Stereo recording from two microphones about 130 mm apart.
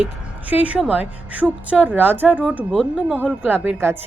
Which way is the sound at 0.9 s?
10° right (ahead or behind).